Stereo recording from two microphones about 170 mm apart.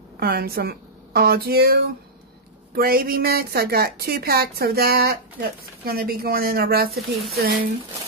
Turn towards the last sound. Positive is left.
turn(degrees=-70)  # may be behind; listen again after turning